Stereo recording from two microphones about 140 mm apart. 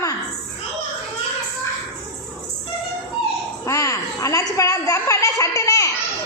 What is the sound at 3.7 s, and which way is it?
A woman's voice, 20° left (ahead or behind).